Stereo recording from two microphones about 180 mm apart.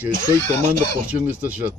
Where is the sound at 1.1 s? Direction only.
10° right (ahead or behind).